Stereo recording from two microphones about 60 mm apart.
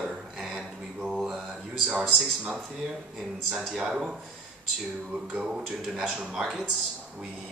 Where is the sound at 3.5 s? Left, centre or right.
Centre.